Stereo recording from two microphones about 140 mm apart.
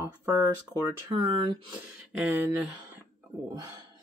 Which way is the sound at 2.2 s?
10° right (ahead or behind).